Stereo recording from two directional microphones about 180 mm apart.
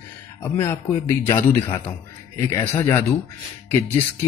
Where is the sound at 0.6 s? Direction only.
10° left (ahead or behind).